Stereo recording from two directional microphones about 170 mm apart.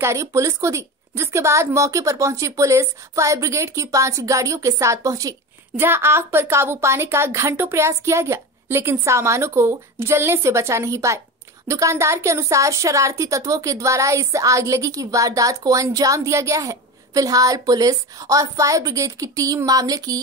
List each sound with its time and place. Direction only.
0.0 s a woman's voice: 15° right (ahead or behind)